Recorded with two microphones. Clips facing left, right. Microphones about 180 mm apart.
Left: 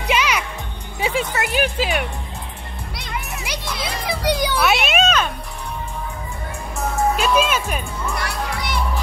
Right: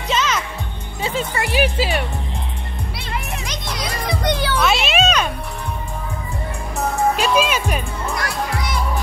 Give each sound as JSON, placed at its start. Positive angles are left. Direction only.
{"t": 0.1, "sound": "music", "side_deg": 10}
{"t": 1.0, "sound": "speech", "side_deg": 5}
{"t": 3.4, "sound": "music", "side_deg": 5}
{"t": 5.0, "sound": "music", "side_deg": -10}
{"t": 7.2, "sound": "speech", "side_deg": 50}
{"t": 8.2, "sound": "music", "side_deg": 65}